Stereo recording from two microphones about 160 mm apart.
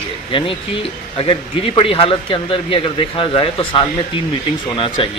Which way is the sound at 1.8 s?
35° left (ahead or behind).